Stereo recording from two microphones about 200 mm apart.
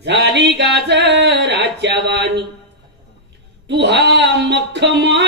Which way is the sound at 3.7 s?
60° right (ahead or behind).